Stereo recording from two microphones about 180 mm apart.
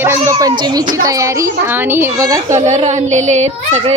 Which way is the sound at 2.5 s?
40° right (ahead or behind).